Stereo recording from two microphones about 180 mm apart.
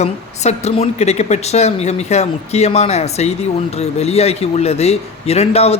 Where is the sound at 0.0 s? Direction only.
40° left (ahead or behind).